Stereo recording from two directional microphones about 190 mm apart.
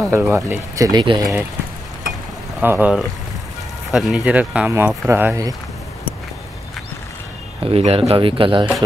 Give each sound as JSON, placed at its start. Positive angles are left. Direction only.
{"t": 0.1, "sound": "speech", "side_deg": -10}
{"t": 2.6, "sound": "speech", "side_deg": -10}
{"t": 7.6, "sound": "speech", "side_deg": -30}